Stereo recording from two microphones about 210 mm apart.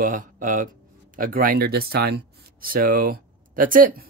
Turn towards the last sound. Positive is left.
turn(degrees=-40)  # may be behind; listen again after turning